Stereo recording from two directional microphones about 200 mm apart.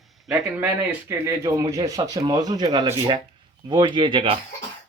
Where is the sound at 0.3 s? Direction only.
10° right (ahead or behind); by 4.4 s 25° right (ahead or behind).